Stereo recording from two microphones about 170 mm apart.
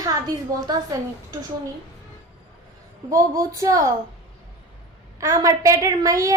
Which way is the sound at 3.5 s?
20° right (ahead or behind).